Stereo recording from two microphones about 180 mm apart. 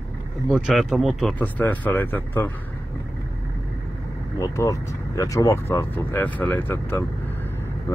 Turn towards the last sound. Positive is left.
turn(degrees=10)  # may be behind; listen again after turning